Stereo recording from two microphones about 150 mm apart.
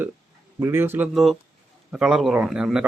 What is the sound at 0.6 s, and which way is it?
Speech, 15° right (ahead or behind).